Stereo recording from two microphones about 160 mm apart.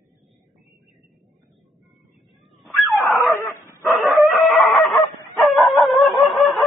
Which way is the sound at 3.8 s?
Centre (ahead or behind).